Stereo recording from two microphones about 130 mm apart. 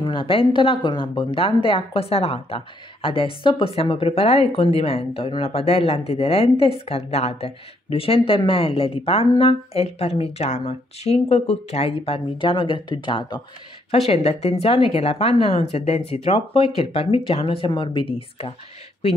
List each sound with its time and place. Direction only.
0.0 s speech: 40° left (ahead or behind)
14.0 s speech: 50° left (ahead or behind)